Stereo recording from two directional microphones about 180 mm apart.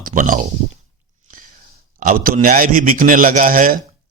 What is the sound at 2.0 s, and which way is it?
Speech, 50° right (ahead or behind).